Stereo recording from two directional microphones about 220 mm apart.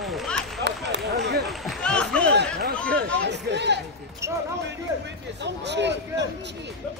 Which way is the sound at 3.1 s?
50° right (ahead or behind).